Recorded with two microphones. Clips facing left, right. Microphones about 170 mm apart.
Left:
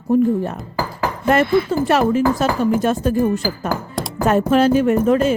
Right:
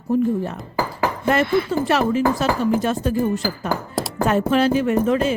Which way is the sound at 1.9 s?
50° left (ahead or behind).